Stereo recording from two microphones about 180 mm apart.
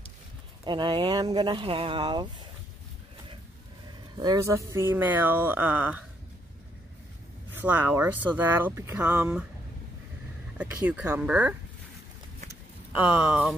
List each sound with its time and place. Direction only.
0.7 s speech: 25° right (ahead or behind)
4.2 s speech: 20° right (ahead or behind)
7.5 s speech: 10° right (ahead or behind)
10.6 s speech: 5° right (ahead or behind)
13.3 s a sound: centre (ahead or behind)